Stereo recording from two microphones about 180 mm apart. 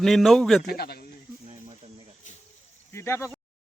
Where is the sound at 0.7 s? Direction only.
60° left (ahead or behind).